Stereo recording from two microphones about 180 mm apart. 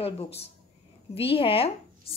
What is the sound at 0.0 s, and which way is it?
Speech, 35° left (ahead or behind).